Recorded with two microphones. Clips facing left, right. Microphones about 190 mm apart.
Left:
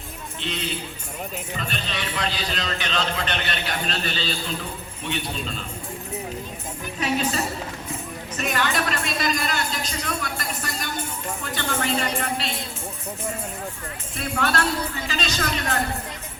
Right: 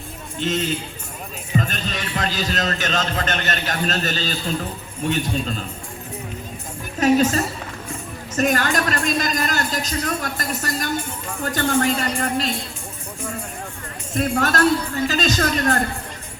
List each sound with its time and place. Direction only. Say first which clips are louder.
0.3 s speech: right 7 dB; 45° right (ahead or behind)
7.0 s speech: right 8 dB; 45° right (ahead or behind)
14.1 s speech: right 5 dB; 45° right (ahead or behind)